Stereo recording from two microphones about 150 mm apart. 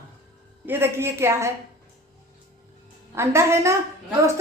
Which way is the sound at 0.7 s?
15° right (ahead or behind).